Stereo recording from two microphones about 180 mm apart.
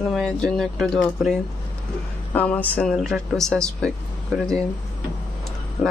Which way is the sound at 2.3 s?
10° left (ahead or behind).